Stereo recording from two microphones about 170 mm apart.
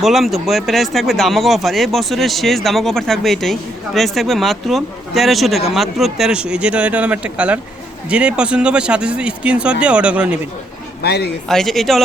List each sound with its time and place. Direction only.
0.0 s speech: centre (ahead or behind)
11.0 s speech: 70° left (ahead or behind)
11.4 s speech: centre (ahead or behind)